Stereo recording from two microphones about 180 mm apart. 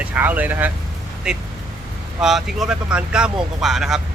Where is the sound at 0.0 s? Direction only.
10° right (ahead or behind).